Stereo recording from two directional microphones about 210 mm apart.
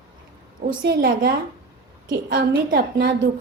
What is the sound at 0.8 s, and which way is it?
Speech, 45° right (ahead or behind).